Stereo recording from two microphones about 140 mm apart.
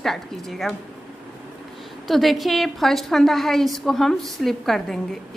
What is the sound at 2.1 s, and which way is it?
A woman's voice, centre (ahead or behind).